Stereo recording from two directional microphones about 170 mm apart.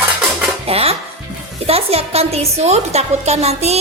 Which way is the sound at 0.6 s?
35° right (ahead or behind).